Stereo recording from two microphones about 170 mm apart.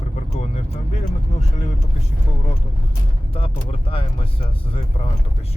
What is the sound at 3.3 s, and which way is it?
Speech, 30° left (ahead or behind).